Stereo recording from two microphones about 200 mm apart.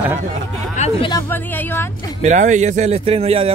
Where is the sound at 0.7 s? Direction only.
35° left (ahead or behind).